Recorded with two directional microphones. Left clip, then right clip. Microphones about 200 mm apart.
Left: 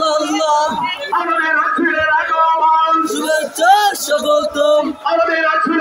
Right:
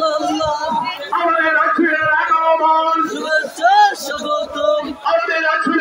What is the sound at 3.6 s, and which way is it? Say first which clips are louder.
Music: left 1 dB; 55° left (ahead or behind).